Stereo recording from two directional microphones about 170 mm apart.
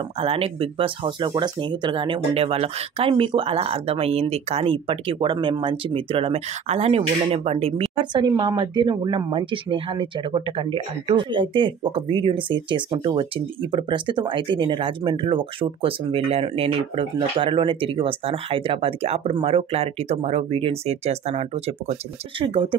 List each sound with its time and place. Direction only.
0.2 s speech: 35° right (ahead or behind)